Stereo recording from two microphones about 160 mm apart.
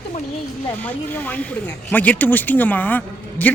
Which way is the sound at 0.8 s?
10° left (ahead or behind).